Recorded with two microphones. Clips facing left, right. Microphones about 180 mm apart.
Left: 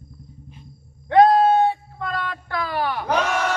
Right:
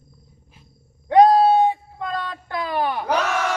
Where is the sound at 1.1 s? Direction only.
15° right (ahead or behind).